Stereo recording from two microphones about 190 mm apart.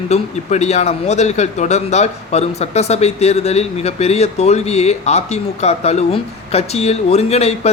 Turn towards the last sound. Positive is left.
turn(degrees=35)  # may be behind; listen again after turning